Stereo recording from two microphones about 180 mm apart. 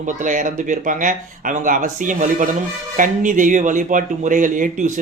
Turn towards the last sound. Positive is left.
turn(degrees=-45)  # may be behind; listen again after turning